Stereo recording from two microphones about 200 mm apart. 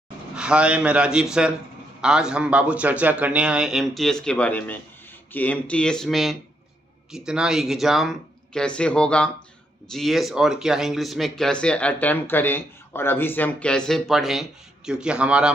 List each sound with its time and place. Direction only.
0.4 s speech: 5° right (ahead or behind)